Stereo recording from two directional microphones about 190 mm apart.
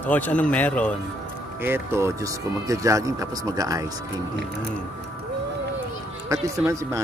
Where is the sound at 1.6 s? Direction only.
15° right (ahead or behind).